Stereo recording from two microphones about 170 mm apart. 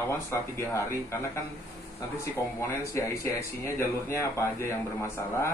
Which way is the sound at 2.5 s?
15° left (ahead or behind).